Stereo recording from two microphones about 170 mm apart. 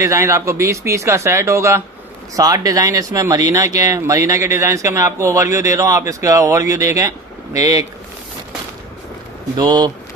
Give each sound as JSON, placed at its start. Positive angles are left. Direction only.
{"t": 0.0, "sound": "speech", "side_deg": -20}
{"t": 9.6, "sound": "speech", "side_deg": -25}